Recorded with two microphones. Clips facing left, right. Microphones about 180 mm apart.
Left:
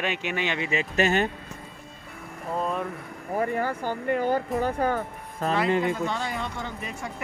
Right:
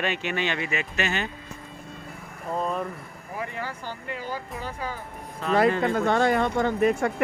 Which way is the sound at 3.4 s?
50° left (ahead or behind).